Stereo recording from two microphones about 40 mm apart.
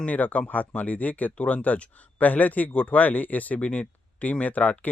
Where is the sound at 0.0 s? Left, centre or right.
Left.